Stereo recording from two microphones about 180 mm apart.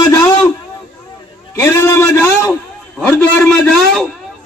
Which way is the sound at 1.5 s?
15° left (ahead or behind).